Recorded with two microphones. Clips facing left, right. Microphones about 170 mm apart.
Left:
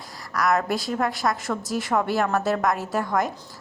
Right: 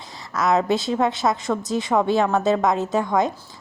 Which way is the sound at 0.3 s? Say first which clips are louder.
Right 3 dB; 25° right (ahead or behind).